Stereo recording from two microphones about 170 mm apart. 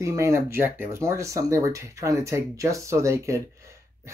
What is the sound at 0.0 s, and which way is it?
Speech, 20° right (ahead or behind).